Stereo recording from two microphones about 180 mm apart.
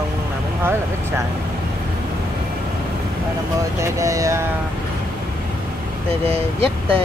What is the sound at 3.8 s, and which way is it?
Speech, 15° right (ahead or behind).